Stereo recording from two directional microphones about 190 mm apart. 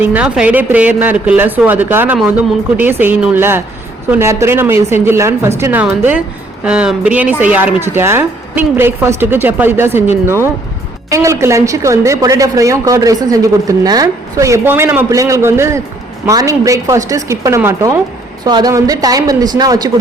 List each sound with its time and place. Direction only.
0.0 s a woman's voice: 10° right (ahead or behind)